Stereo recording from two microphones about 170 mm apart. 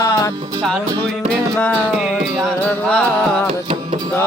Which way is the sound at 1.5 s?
10° left (ahead or behind).